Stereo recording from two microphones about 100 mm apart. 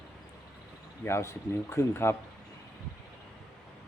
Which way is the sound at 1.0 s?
25° left (ahead or behind).